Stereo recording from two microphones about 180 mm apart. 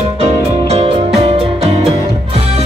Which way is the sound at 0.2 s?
35° right (ahead or behind).